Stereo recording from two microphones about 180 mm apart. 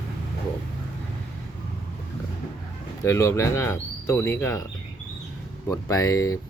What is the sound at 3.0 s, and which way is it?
Speech, 15° left (ahead or behind).